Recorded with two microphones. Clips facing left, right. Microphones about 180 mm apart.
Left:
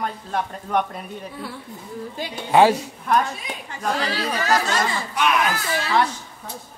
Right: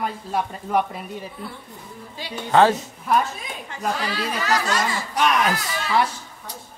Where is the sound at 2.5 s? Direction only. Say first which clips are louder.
Left 1 dB; 10° left (ahead or behind).